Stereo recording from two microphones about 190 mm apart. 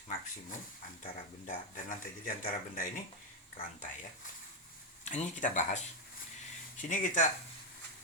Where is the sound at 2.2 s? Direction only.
45° left (ahead or behind).